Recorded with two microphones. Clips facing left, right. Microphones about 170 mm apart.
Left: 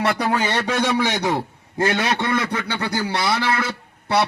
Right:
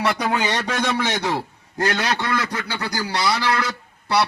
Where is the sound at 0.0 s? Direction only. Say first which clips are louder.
Left 1 dB; 5° left (ahead or behind).